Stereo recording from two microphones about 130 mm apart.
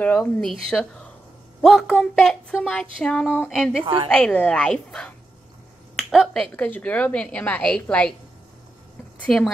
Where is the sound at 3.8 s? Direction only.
40° right (ahead or behind).